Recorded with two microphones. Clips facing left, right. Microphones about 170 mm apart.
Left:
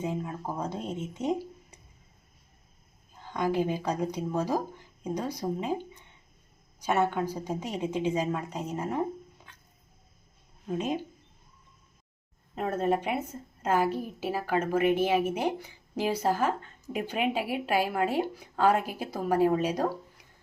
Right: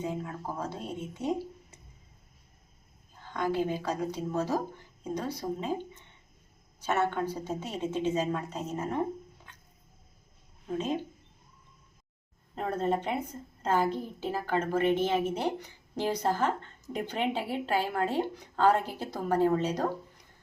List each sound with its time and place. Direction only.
0.0 s speech: 20° left (ahead or behind)
3.3 s a woman's voice: 15° left (ahead or behind)
10.7 s a woman's voice: 15° left (ahead or behind)
12.5 s a woman's voice: 10° left (ahead or behind)